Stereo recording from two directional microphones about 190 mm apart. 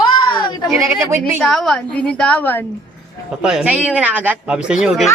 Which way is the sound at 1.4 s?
5° left (ahead or behind).